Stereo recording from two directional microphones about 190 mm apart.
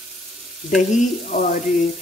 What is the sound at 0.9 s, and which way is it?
Speech, 40° left (ahead or behind).